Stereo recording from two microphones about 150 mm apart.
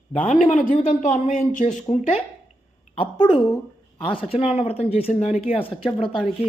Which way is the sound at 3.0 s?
35° left (ahead or behind).